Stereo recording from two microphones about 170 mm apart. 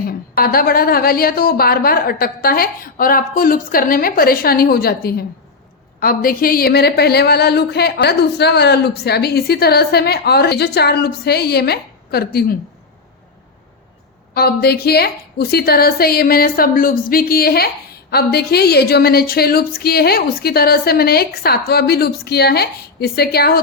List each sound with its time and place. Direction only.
0.3 s a woman's voice: 60° left (ahead or behind)
14.3 s a woman's voice: 65° left (ahead or behind)